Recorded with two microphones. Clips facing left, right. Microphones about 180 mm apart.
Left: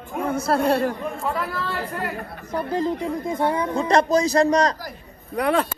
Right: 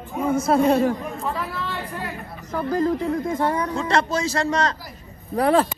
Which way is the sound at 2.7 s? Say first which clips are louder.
Right 3 dB; 25° left (ahead or behind).